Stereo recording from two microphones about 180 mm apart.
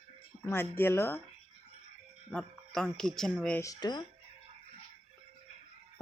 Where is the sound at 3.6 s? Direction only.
20° left (ahead or behind).